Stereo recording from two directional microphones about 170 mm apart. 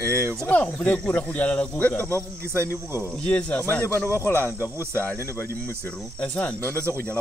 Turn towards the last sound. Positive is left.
turn(degrees=10)  # may be behind; listen again after turning